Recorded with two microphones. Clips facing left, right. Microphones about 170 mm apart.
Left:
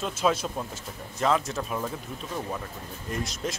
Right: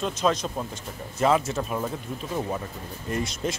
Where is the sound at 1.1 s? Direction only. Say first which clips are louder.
Right 3 dB; 5° right (ahead or behind).